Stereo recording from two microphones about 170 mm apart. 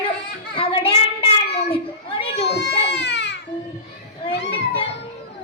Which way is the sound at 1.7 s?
30° left (ahead or behind).